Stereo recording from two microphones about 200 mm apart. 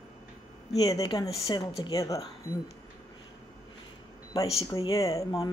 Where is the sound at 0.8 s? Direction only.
20° left (ahead or behind).